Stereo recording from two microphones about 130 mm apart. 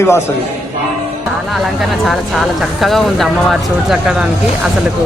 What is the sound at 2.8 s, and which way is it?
Speech, centre (ahead or behind).